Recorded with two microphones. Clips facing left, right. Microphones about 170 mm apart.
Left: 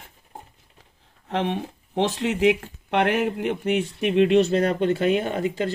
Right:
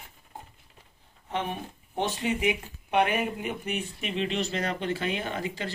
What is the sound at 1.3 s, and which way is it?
Speech, 90° left.